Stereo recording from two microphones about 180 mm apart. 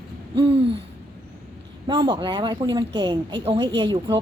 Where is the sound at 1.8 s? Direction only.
25° right (ahead or behind).